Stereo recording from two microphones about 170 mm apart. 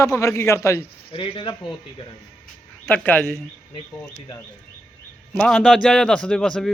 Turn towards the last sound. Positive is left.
turn(degrees=5)  # may be behind; listen again after turning